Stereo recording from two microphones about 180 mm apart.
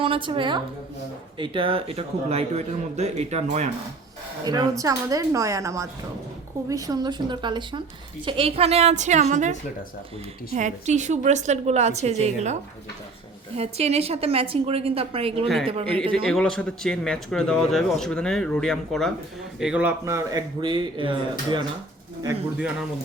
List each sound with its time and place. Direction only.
0.0 s a man's voice: 30° right (ahead or behind)
4.4 s a woman's voice: 20° right (ahead or behind); by 12.5 s 40° right (ahead or behind)
13.6 s a man's voice: 35° right (ahead or behind)
16.3 s a man's voice: 5° left (ahead or behind); by 21.6 s 25° right (ahead or behind)